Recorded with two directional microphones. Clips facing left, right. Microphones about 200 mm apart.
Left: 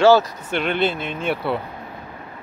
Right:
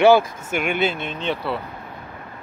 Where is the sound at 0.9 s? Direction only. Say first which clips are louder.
Left 2 dB; 5° left (ahead or behind).